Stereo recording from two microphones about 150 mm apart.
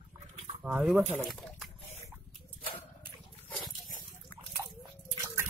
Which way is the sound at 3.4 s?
Centre (ahead or behind).